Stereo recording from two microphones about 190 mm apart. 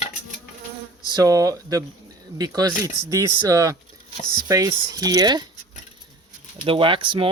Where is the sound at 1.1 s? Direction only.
20° right (ahead or behind).